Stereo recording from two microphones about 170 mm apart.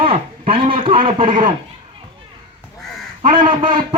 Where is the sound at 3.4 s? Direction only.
30° right (ahead or behind).